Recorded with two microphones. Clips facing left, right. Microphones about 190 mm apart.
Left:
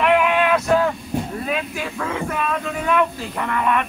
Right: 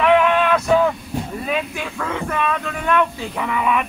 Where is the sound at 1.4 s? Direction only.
Centre (ahead or behind).